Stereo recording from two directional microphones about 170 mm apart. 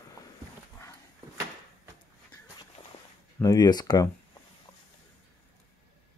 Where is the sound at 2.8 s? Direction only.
35° left (ahead or behind).